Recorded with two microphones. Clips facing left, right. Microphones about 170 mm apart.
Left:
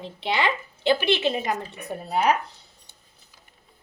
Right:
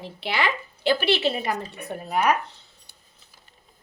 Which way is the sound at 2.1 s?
30° left (ahead or behind).